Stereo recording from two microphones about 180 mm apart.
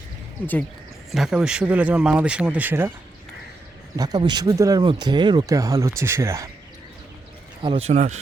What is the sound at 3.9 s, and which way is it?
Speech, 20° right (ahead or behind).